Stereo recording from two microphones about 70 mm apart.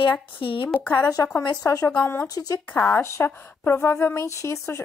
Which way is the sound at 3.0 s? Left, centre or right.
Left.